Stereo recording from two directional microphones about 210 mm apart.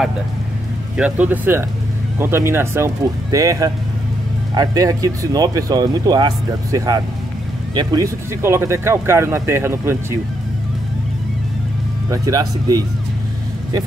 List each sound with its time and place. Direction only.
0.9 s speech: 5° right (ahead or behind)
12.1 s speech: 15° right (ahead or behind)